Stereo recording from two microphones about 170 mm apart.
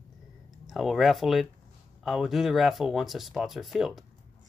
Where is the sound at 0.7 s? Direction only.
Centre (ahead or behind).